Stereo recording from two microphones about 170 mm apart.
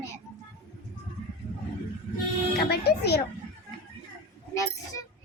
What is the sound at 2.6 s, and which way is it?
Speech, 70° left (ahead or behind).